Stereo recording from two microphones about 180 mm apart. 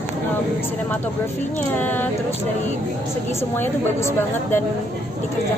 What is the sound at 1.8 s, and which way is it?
Speech, 10° left (ahead or behind).